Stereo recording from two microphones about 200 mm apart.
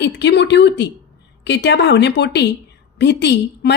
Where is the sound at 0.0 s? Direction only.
60° left (ahead or behind).